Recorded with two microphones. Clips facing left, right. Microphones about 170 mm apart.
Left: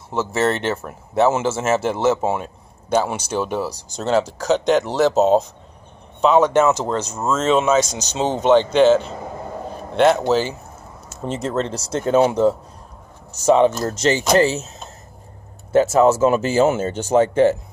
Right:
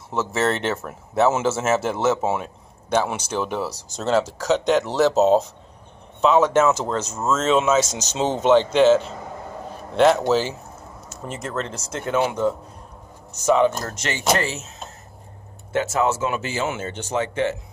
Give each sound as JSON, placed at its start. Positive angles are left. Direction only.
{"t": 0.1, "sound": "speech", "side_deg": 0}
{"t": 11.2, "sound": "speech", "side_deg": 30}
{"t": 15.7, "sound": "speech", "side_deg": 35}